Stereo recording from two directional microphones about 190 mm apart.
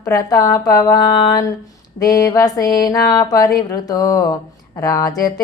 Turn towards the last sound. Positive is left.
turn(degrees=20)  # may be behind; listen again after turning